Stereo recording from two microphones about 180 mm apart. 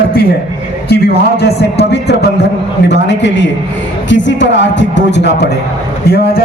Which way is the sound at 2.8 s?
80° left.